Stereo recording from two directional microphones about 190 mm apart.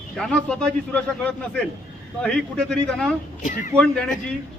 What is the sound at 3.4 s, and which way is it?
Speech, 40° left (ahead or behind).